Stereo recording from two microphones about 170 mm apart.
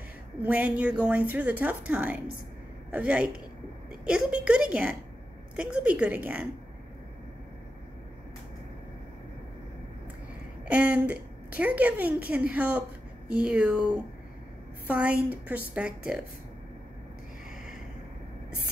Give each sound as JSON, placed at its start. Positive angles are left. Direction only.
{"t": 0.4, "sound": "a woman's voice", "side_deg": -10}
{"t": 10.7, "sound": "a woman's voice", "side_deg": -10}
{"t": 14.9, "sound": "a woman's voice", "side_deg": -10}